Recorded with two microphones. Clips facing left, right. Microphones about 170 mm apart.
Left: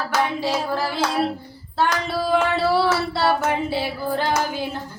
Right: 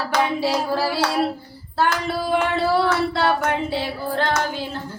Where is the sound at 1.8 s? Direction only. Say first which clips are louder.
Even; centre (ahead or behind).